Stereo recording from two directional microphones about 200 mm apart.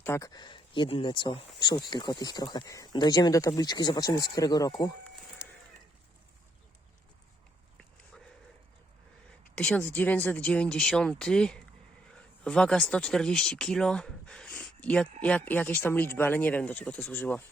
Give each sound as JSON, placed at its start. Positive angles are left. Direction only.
{"t": 0.0, "sound": "speech", "side_deg": 15}
{"t": 5.0, "sound": "a sound", "side_deg": 0}
{"t": 9.6, "sound": "speech", "side_deg": 10}